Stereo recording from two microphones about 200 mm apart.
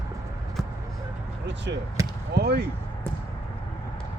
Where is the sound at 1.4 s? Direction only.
60° right (ahead or behind).